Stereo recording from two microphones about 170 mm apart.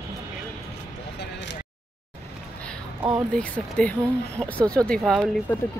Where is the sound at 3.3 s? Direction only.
10° left (ahead or behind).